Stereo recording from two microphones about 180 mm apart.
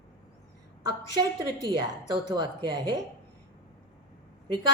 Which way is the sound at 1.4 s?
25° right (ahead or behind).